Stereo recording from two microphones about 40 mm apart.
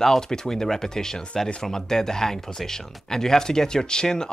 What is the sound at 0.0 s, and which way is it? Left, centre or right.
Speech, centre.